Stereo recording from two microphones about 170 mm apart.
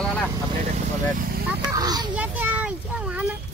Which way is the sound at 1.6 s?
25° right (ahead or behind).